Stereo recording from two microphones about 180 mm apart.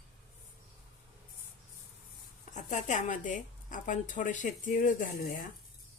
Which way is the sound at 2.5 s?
45° left (ahead or behind).